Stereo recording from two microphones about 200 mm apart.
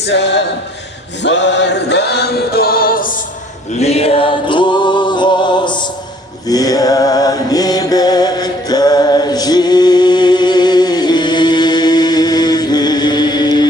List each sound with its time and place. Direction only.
0.0 s choir: 60° left (ahead or behind)
3.7 s music: 30° left (ahead or behind)